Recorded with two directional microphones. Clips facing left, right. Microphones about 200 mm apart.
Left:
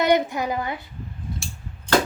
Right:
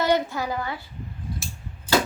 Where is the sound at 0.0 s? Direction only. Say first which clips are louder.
Left 3 dB; 15° left (ahead or behind).